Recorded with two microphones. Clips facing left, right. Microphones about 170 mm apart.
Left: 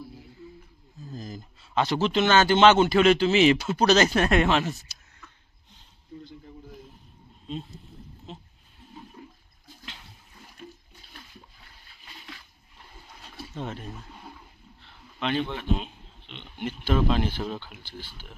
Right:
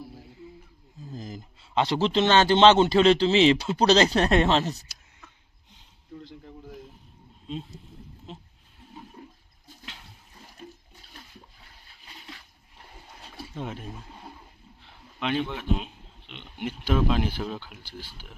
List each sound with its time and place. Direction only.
1.0 s speech: 20° right (ahead or behind)
7.4 s speech: centre (ahead or behind)
13.6 s a man's voice: 10° right (ahead or behind)